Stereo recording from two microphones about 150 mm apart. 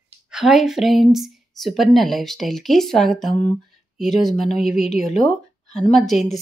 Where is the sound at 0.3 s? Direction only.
5° right (ahead or behind).